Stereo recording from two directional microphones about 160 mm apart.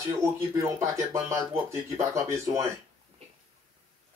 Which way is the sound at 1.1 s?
15° right (ahead or behind).